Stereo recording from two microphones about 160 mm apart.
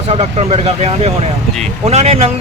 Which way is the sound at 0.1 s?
40° right (ahead or behind).